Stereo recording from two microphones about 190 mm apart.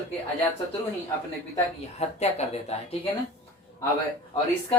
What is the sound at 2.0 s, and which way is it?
Speech, 35° left (ahead or behind).